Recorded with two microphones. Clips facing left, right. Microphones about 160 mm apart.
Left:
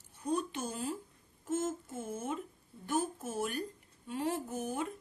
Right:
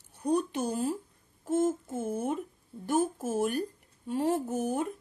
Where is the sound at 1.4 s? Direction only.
35° right (ahead or behind).